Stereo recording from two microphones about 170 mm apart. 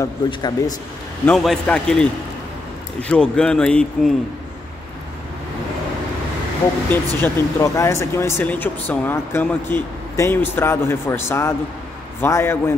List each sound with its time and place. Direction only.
0.0 s speech: 25° left (ahead or behind)
1.2 s speech: centre (ahead or behind)
7.2 s speech: 20° left (ahead or behind)